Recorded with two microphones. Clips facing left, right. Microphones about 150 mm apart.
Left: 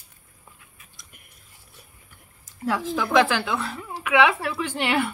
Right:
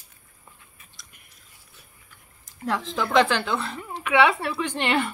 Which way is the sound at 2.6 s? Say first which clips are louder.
Left 2 dB; 5° left (ahead or behind).